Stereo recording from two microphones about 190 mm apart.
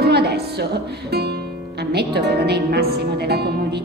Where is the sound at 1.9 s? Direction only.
60° right (ahead or behind).